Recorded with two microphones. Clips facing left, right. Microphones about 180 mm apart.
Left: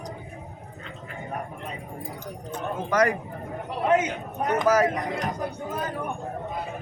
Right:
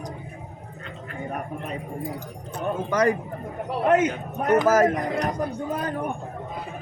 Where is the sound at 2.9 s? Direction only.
30° right (ahead or behind).